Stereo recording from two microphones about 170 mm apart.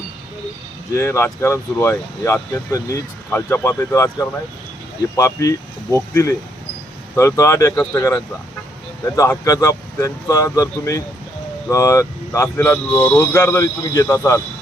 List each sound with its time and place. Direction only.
0.9 s speech: 15° left (ahead or behind)